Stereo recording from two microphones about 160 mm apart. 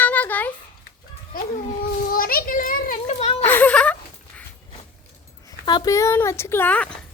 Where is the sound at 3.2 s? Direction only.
35° left (ahead or behind).